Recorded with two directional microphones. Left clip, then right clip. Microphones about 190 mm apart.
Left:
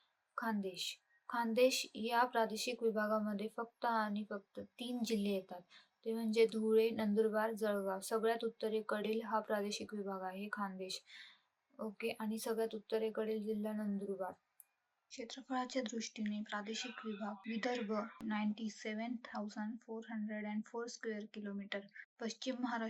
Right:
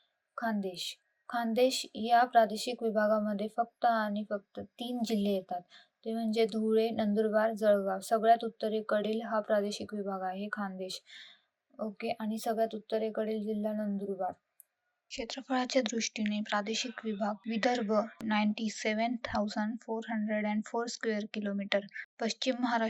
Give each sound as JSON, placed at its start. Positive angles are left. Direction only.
{"t": 0.3, "sound": "a woman's voice", "side_deg": -25}
{"t": 15.1, "sound": "speech", "side_deg": -40}